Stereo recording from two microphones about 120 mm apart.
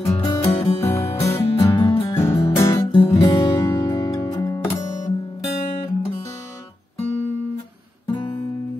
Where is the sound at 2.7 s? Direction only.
40° left (ahead or behind).